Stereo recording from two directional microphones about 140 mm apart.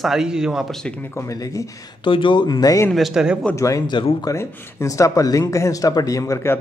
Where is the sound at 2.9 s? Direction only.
Centre (ahead or behind).